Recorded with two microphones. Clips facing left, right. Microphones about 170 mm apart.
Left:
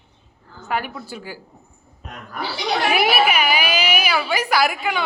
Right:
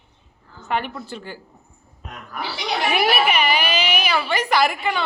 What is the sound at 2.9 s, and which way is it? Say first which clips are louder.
A woman's voice: even; 5° left (ahead or behind).